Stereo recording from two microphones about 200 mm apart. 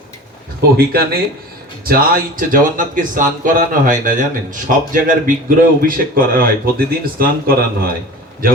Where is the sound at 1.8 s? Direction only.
45° right (ahead or behind).